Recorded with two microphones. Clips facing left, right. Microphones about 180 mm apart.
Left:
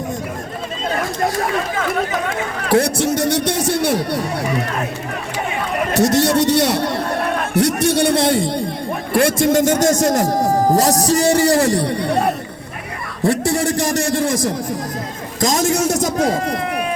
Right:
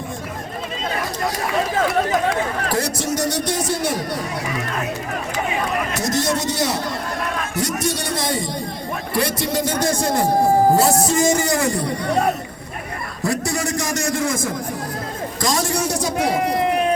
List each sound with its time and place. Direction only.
2.6 s a man's voice: 65° left (ahead or behind)
5.9 s a man's voice: 70° left (ahead or behind)
9.1 s speech: 50° left (ahead or behind); by 12.1 s 30° left (ahead or behind)
14.2 s a man's voice: 35° left (ahead or behind)
16.3 s speech: 20° right (ahead or behind)